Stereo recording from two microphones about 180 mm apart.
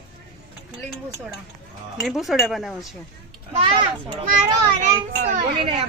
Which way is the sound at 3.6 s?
25° right (ahead or behind).